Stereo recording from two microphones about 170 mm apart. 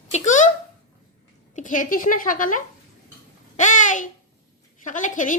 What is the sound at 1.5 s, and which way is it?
Speech, 50° left (ahead or behind).